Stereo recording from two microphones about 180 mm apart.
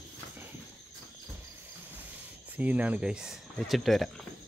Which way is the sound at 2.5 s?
10° right (ahead or behind).